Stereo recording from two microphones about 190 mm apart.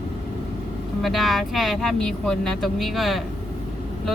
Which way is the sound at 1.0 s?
Centre (ahead or behind).